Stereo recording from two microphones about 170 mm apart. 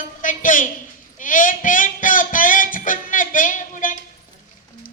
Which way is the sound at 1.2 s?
50° left (ahead or behind).